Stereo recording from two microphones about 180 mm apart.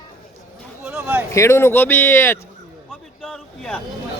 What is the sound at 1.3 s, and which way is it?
Speech, 15° left (ahead or behind).